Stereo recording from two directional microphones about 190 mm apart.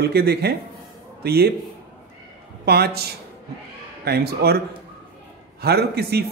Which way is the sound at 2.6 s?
55° right (ahead or behind).